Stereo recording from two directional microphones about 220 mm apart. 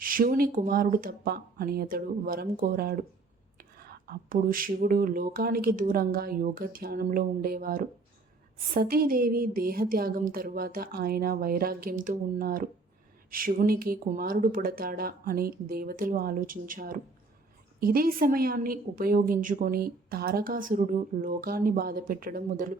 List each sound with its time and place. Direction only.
0.0 s a woman's voice: 40° right (ahead or behind)